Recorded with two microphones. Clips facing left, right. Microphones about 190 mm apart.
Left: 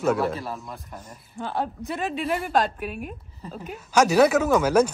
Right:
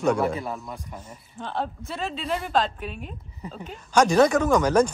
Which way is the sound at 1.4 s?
10° left (ahead or behind).